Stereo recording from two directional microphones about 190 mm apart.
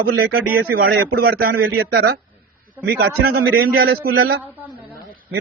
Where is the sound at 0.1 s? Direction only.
55° right (ahead or behind).